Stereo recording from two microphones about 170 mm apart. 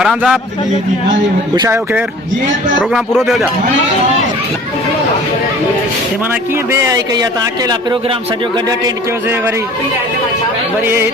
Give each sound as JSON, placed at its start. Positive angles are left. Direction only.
{"t": 0.0, "sound": "speech", "side_deg": -5}
{"t": 1.5, "sound": "speech", "side_deg": -15}
{"t": 2.9, "sound": "speech", "side_deg": 0}
{"t": 6.7, "sound": "speech", "side_deg": -20}